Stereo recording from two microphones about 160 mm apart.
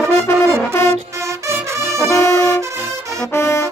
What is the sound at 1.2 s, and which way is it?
Brass instrument, 20° right (ahead or behind).